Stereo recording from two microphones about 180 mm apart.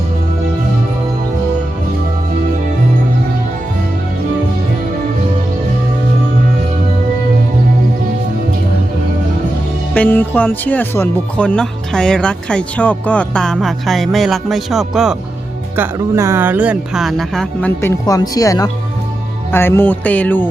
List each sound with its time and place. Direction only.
9.9 s speech: 10° left (ahead or behind)
15.7 s speech: 15° right (ahead or behind); by 17.7 s 5° left (ahead or behind)
17.7 s speech: 15° left (ahead or behind)
19.5 s music: 10° left (ahead or behind)